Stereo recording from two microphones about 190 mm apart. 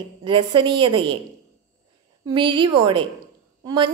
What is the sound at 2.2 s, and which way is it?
A woman's voice, 25° right (ahead or behind).